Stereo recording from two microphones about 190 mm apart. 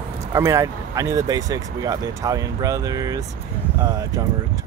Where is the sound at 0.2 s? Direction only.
15° right (ahead or behind).